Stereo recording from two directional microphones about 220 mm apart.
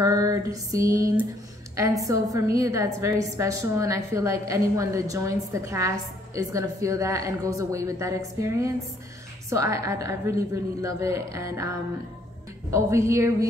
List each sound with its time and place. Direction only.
0.0 s a woman's voice: 15° right (ahead or behind)
12.7 s a woman's voice: 15° right (ahead or behind)